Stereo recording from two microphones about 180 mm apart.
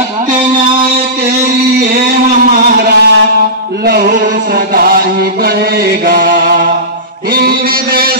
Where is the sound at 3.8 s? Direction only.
60° right (ahead or behind).